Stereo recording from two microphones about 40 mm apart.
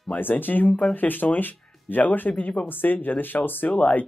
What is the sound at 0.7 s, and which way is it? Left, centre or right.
Speech, centre.